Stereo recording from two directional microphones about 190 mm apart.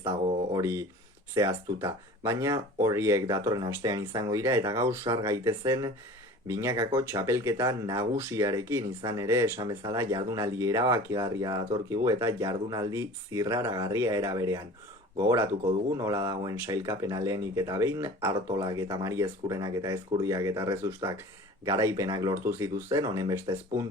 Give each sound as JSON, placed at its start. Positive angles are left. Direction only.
{"t": 0.0, "sound": "a sound", "side_deg": -30}
{"t": 0.6, "sound": "speech", "side_deg": -15}
{"t": 16.0, "sound": "speech", "side_deg": -20}